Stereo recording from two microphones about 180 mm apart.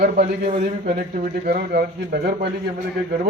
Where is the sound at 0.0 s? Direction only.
55° right (ahead or behind).